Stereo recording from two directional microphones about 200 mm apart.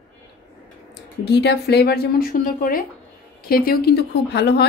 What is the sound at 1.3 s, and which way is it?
A woman's voice, 55° left (ahead or behind).